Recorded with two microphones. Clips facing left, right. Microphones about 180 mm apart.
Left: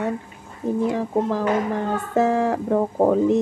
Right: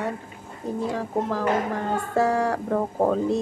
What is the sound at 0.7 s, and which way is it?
Speech, 15° left (ahead or behind).